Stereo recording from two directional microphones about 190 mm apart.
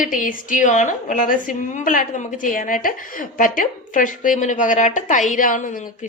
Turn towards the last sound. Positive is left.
turn(degrees=45)  # may be behind; listen again after turning